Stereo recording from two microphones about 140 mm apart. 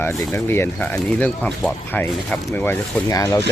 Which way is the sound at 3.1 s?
25° left (ahead or behind).